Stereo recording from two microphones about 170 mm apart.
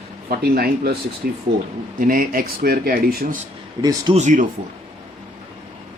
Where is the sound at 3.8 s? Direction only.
20° right (ahead or behind).